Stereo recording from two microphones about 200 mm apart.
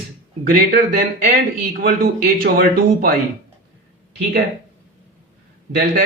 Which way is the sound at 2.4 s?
50° right (ahead or behind).